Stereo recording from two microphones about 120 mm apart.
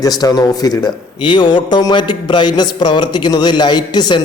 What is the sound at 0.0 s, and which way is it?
A man's voice, 30° left (ahead or behind).